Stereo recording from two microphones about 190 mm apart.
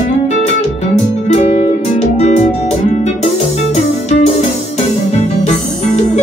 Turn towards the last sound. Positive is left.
turn(degrees=35)  # may be behind; listen again after turning